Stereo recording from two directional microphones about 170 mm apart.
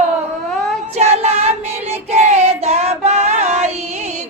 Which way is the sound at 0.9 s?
40° right (ahead or behind).